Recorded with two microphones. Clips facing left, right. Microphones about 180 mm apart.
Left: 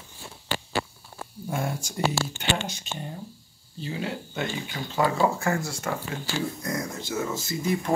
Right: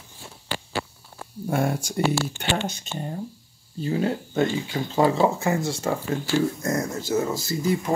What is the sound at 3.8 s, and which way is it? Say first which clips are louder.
Speech: right 7 dB; 45° right (ahead or behind).